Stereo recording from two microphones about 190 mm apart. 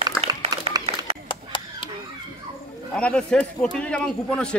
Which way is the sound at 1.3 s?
25° left (ahead or behind).